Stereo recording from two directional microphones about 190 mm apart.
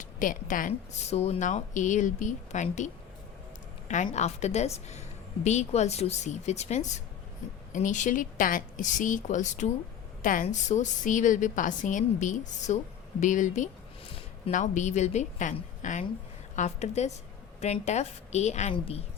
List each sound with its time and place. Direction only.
0.0 s a woman's voice: 45° left (ahead or behind)